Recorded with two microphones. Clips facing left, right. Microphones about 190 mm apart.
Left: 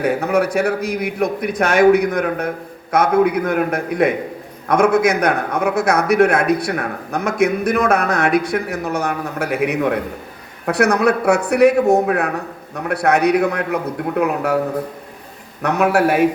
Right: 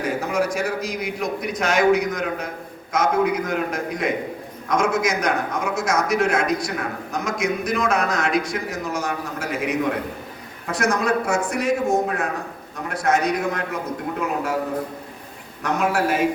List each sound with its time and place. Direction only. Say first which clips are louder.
0.0 s a man's voice: left 6 dB; 60° left (ahead or behind)
15.6 s a man's voice: left 6 dB; 65° left (ahead or behind)